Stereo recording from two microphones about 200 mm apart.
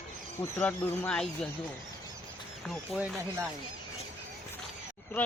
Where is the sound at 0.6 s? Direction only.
10° left (ahead or behind).